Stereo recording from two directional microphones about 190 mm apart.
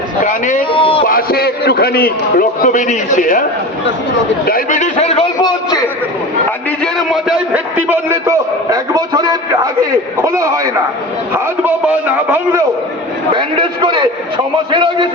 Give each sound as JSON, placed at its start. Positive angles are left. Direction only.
{"t": 0.2, "sound": "speech", "side_deg": 40}
{"t": 0.7, "sound": "a sound", "side_deg": 30}
{"t": 1.0, "sound": "a man's voice", "side_deg": 50}
{"t": 4.4, "sound": "a sound", "side_deg": 45}
{"t": 6.8, "sound": "a man's voice", "side_deg": 0}
{"t": 13.3, "sound": "a man's voice", "side_deg": -25}